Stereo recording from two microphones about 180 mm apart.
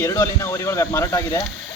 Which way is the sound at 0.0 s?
15° left (ahead or behind).